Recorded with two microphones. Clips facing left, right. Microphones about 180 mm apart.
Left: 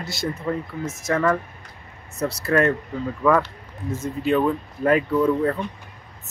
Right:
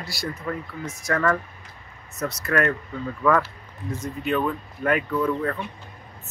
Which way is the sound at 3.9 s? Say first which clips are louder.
Left 4 dB; 25° left (ahead or behind).